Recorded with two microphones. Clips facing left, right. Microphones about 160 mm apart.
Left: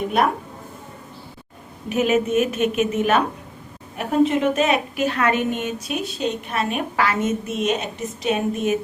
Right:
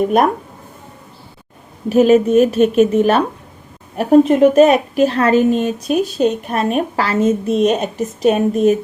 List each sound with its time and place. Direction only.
1.9 s a woman's voice: 35° right (ahead or behind)